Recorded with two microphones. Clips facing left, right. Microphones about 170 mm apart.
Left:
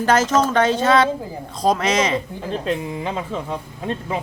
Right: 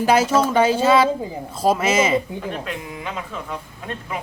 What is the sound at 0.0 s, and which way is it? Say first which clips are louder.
Speech: even; 10° right (ahead or behind).